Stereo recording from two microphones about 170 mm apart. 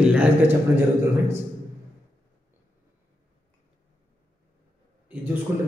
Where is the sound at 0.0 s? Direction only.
5° right (ahead or behind).